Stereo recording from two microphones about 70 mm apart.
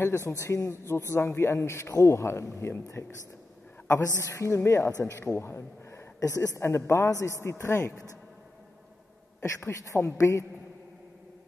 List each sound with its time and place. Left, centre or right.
0.0 s a man's voice: left
3.8 s a man's voice: left
6.1 s a man's voice: left
9.4 s a man's voice: left